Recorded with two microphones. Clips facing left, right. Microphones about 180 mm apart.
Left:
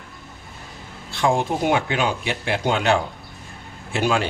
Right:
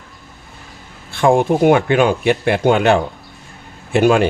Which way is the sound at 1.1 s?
55° right (ahead or behind).